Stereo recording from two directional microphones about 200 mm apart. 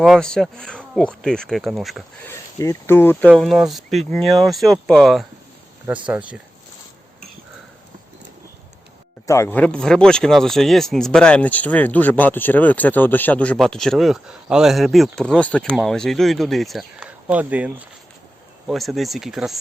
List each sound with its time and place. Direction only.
0.0 s speech: centre (ahead or behind)
2.3 s speech: 15° left (ahead or behind); by 6.4 s 5° right (ahead or behind)
9.2 s speech: 15° left (ahead or behind); by 19.5 s centre (ahead or behind)